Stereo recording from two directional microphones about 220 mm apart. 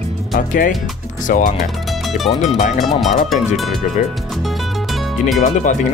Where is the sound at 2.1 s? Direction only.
Centre (ahead or behind).